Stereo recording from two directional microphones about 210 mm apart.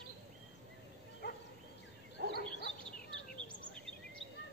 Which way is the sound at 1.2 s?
50° left (ahead or behind).